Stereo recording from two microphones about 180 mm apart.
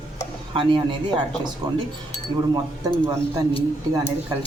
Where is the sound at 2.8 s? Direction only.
15° right (ahead or behind).